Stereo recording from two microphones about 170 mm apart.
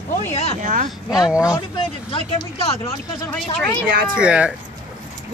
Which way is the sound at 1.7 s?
35° left (ahead or behind).